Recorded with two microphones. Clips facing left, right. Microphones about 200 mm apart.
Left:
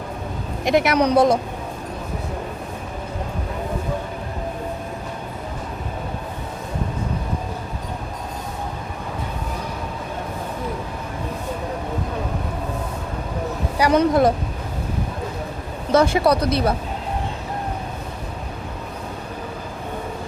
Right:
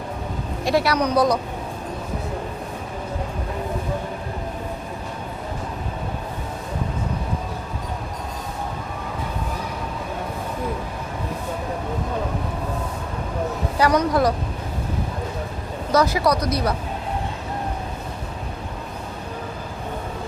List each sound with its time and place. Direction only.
0.6 s a woman's voice: 20° left (ahead or behind)
13.9 s speech: 25° left (ahead or behind)
15.9 s speech: 25° left (ahead or behind)